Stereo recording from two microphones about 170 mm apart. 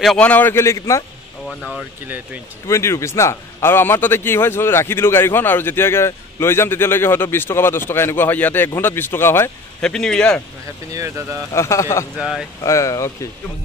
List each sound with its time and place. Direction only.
0.0 s a man's voice: 5° left (ahead or behind)
1.5 s speech: 5° left (ahead or behind)
2.0 s speech: 10° right (ahead or behind)
2.6 s a man's voice: 15° left (ahead or behind)
10.9 s speech: 20° right (ahead or behind)
11.5 s a man's voice: 15° left (ahead or behind)
12.2 s speech: centre (ahead or behind)
12.6 s a man's voice: 20° left (ahead or behind)